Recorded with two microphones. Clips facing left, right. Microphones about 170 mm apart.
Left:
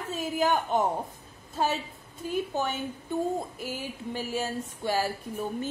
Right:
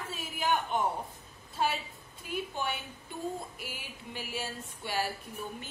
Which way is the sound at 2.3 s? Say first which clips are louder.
Left 5 dB; 45° left (ahead or behind).